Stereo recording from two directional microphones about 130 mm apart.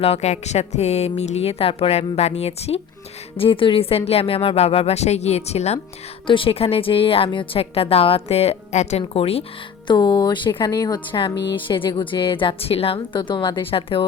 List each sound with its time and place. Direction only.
0.0 s a woman's voice: 55° left (ahead or behind)
6.2 s a woman's voice: 40° left (ahead or behind)
9.8 s speech: 35° left (ahead or behind)